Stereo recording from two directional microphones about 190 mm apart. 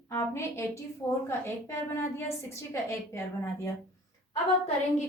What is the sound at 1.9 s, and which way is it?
A woman's voice, 15° left (ahead or behind).